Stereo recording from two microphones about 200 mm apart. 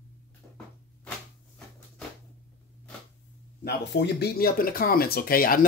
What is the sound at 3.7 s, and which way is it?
Speech, 50° left (ahead or behind).